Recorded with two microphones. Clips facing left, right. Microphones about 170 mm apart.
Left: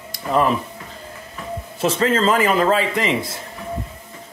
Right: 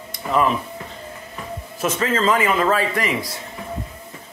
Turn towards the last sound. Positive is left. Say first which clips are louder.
# left 2 dB
turn(degrees=25)  # may be behind; listen again after turning